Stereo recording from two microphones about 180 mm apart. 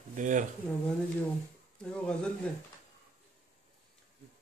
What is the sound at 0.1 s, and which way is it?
Speech, 45° right (ahead or behind).